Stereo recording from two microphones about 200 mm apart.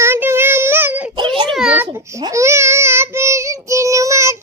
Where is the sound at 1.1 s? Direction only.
25° right (ahead or behind).